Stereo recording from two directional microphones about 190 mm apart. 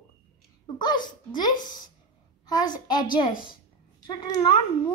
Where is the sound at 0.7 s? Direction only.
25° left (ahead or behind).